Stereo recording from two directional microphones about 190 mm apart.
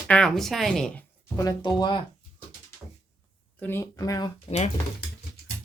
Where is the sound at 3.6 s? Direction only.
15° left (ahead or behind).